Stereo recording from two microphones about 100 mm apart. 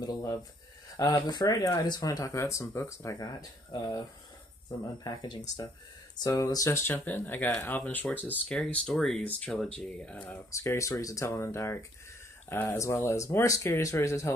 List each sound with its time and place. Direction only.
0.0 s speech: 35° left (ahead or behind); by 10.4 s 15° left (ahead or behind)
10.5 s speech: 25° left (ahead or behind)